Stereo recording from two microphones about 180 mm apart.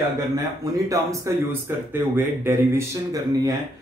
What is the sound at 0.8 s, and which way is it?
Speech, 15° right (ahead or behind).